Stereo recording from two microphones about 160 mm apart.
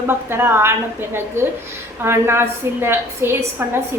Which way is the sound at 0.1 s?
15° right (ahead or behind).